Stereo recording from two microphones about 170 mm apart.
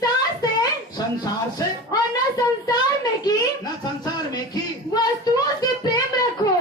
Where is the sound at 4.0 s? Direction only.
25° left (ahead or behind).